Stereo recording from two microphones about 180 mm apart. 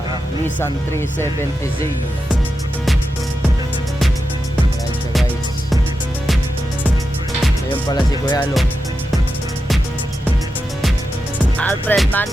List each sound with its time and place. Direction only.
0.6 s speech: 15° left (ahead or behind)
7.7 s music: 25° left (ahead or behind)
11.5 s speech: 10° left (ahead or behind)